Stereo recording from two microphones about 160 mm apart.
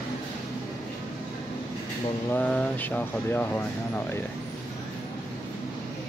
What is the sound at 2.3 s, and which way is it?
Speech, 10° left (ahead or behind).